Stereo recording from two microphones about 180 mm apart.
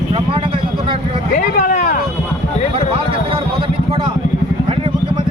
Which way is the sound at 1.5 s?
45° left (ahead or behind).